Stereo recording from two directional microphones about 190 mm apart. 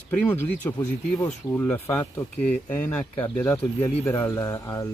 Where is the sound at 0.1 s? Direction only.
10° left (ahead or behind).